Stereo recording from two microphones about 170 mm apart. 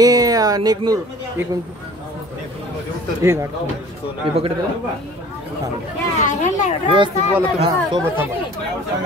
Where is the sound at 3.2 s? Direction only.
15° right (ahead or behind).